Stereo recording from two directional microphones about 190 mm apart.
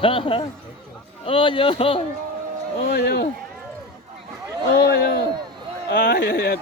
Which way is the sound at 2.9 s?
60° left (ahead or behind).